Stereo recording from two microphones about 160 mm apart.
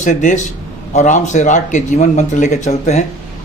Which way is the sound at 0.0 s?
50° left (ahead or behind).